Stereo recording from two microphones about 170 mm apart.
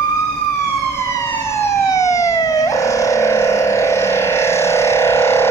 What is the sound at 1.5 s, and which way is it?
Emergency vehicle, 20° left (ahead or behind).